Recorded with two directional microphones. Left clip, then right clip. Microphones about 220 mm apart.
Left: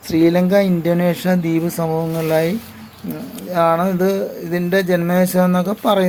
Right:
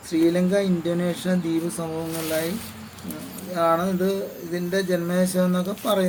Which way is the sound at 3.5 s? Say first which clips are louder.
Left 6 dB; 25° left (ahead or behind).